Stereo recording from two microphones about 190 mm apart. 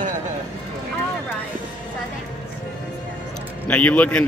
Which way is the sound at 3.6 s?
10° left (ahead or behind).